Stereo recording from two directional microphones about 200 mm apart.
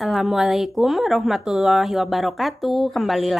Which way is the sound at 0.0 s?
Centre (ahead or behind).